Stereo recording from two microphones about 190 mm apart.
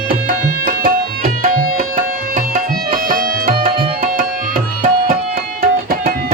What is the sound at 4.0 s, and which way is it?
Tabla, 45° right (ahead or behind).